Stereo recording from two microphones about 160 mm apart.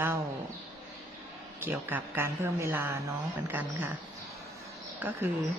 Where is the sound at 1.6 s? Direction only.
15° right (ahead or behind).